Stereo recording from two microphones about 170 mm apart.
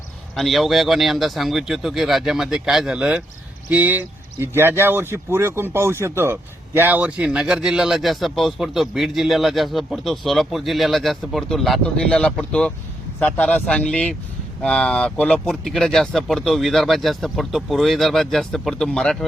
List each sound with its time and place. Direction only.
0.3 s speech: centre (ahead or behind)